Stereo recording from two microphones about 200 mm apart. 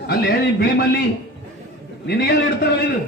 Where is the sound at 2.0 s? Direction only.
55° left (ahead or behind).